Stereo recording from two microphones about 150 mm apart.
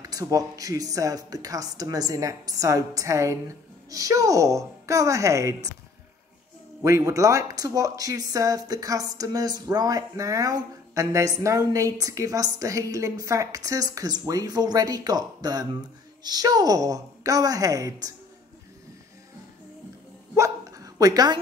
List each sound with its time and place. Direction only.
0.0 s speech: 25° right (ahead or behind)
6.8 s speech: 20° right (ahead or behind)
20.3 s hiccup: 20° right (ahead or behind)